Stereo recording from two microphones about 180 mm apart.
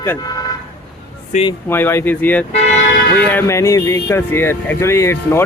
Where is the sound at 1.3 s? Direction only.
40° left (ahead or behind).